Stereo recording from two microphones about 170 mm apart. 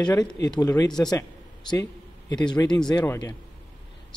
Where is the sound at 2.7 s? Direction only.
5° left (ahead or behind).